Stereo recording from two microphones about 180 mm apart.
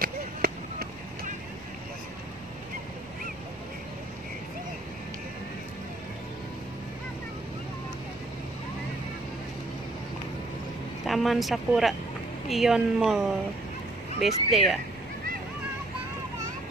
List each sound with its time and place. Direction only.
0.0 s chop: 55° right (ahead or behind)
11.1 s speech: centre (ahead or behind)